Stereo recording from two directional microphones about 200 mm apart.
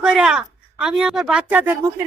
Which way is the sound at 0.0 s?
5° right (ahead or behind).